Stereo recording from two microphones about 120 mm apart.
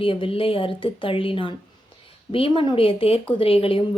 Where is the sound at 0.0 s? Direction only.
50° left (ahead or behind).